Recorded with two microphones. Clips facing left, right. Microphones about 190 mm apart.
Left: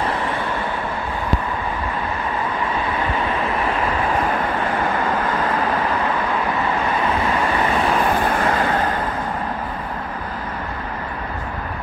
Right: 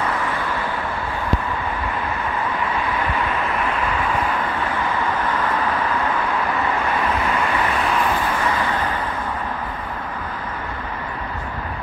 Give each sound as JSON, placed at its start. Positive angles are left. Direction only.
{"t": 8.2, "sound": "vehicle", "side_deg": 45}